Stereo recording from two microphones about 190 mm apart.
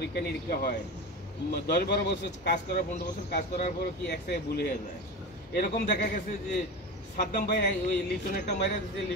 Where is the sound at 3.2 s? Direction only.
55° left (ahead or behind).